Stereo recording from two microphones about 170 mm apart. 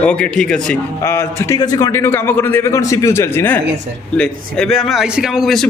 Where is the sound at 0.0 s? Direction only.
5° left (ahead or behind).